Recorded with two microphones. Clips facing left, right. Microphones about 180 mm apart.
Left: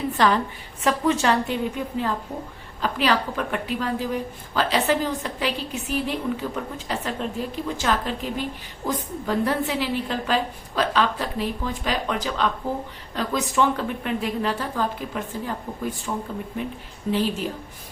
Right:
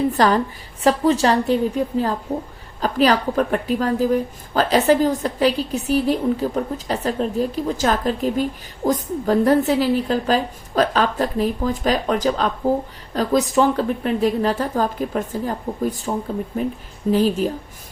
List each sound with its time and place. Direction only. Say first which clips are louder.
0.2 s a woman's voice: right 4 dB; 40° right (ahead or behind)